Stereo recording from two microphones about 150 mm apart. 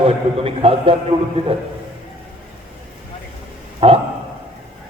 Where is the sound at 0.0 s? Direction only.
40° right (ahead or behind).